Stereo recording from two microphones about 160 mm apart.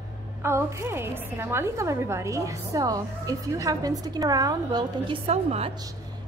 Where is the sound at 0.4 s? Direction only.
15° right (ahead or behind); by 5.7 s 40° right (ahead or behind).